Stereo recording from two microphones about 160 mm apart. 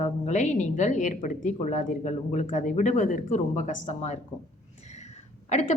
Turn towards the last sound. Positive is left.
turn(degrees=50)  # may be behind; listen again after turning